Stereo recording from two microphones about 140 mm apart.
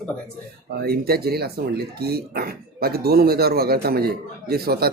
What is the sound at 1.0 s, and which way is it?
Speech, 90° right.